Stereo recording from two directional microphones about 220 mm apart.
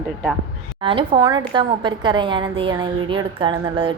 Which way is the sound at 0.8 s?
25° right (ahead or behind).